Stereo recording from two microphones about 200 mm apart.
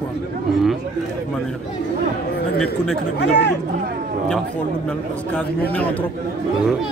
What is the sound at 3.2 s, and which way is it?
Speech, 55° left (ahead or behind).